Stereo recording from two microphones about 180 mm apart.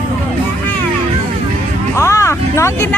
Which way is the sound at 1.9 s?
15° left (ahead or behind).